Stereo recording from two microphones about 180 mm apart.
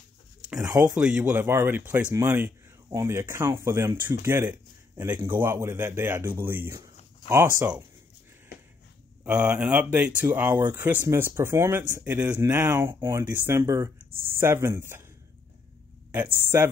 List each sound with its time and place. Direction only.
0.6 s speech: 15° right (ahead or behind)
9.2 s speech: 10° right (ahead or behind)
16.3 s speech: 15° right (ahead or behind)